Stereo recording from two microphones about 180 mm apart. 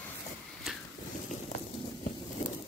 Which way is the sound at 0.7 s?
Centre (ahead or behind).